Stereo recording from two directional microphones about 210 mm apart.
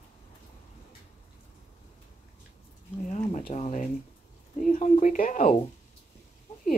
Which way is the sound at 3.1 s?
35° left (ahead or behind).